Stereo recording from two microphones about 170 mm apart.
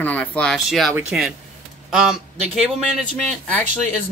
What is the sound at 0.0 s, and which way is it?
Speech, 10° left (ahead or behind).